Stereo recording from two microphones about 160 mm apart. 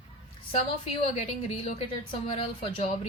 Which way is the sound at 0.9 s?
40° left (ahead or behind).